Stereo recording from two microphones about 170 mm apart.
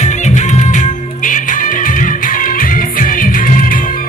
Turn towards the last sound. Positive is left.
turn(degrees=55)  # may be behind; listen again after turning